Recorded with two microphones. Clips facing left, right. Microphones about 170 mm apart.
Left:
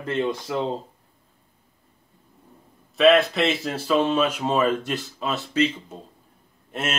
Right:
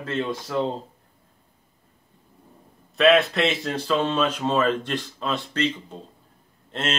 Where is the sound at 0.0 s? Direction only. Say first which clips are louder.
Left 2 dB; 15° left (ahead or behind).